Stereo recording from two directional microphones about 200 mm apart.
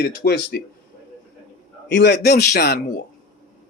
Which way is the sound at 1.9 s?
60° left (ahead or behind).